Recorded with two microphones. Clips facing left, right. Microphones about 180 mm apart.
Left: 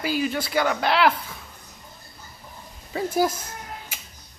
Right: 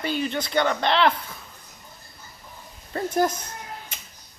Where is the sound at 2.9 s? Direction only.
5° left (ahead or behind).